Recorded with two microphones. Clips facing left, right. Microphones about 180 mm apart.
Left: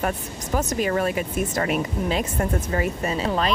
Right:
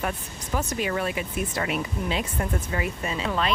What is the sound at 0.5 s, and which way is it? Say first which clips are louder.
Speech: left 4 dB; 45° left (ahead or behind).